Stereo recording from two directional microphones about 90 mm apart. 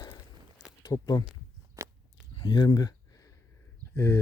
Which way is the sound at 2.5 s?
50° left (ahead or behind).